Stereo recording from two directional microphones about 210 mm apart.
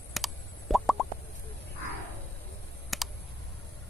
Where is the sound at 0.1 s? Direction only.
Centre (ahead or behind).